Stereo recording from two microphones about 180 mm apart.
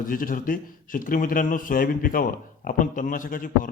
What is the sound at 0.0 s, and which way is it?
Speech, 50° left (ahead or behind).